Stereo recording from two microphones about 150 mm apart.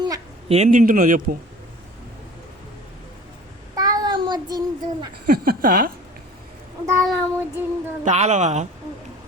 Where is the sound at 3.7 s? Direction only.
25° right (ahead or behind).